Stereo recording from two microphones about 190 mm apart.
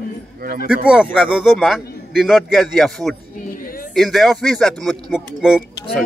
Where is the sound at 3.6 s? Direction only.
50° left (ahead or behind).